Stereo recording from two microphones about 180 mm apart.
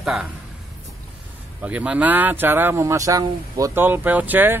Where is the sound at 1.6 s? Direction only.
5° right (ahead or behind).